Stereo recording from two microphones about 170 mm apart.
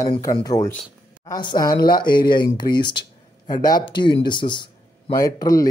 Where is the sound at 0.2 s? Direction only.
20° left (ahead or behind).